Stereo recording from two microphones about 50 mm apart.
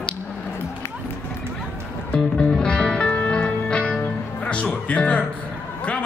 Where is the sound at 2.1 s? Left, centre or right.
Left.